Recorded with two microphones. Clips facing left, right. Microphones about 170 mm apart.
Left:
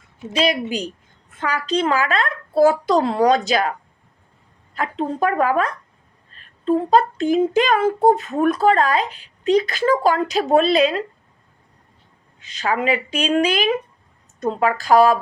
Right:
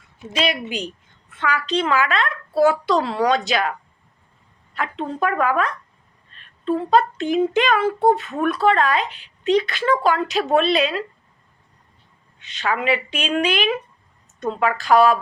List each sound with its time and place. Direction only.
0.3 s a child's voice: 40° left (ahead or behind)
12.5 s a child's voice: 40° left (ahead or behind)